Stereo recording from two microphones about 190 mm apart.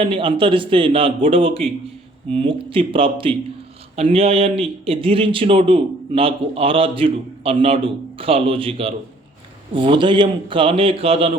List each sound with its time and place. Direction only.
0.0 s a man's voice: 30° right (ahead or behind)